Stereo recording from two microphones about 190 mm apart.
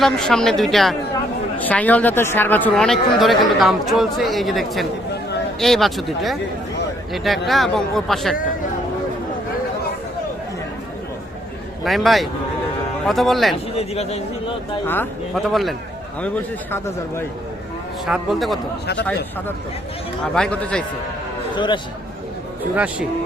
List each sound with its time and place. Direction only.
0.0 s speech: centre (ahead or behind)
7.4 s speech: centre (ahead or behind)
11.9 s speech: centre (ahead or behind)
13.7 s speech: 35° left (ahead or behind)
15.4 s a man's voice: centre (ahead or behind)
18.0 s speech: centre (ahead or behind)
20.3 s speech: 5° left (ahead or behind)
21.5 s a man's voice: 25° left (ahead or behind)
22.7 s speech: 10° right (ahead or behind)